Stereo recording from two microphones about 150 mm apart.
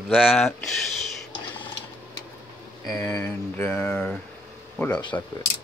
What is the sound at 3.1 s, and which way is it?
Speech, 10° left (ahead or behind).